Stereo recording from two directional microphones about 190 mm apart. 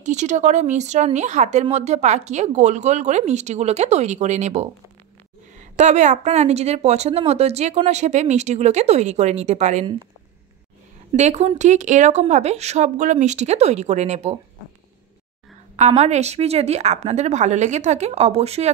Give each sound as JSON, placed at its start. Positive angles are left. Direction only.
{"t": 0.0, "sound": "a woman's voice", "side_deg": -40}
{"t": 11.1, "sound": "a woman's voice", "side_deg": -35}
{"t": 15.7, "sound": "a woman's voice", "side_deg": -35}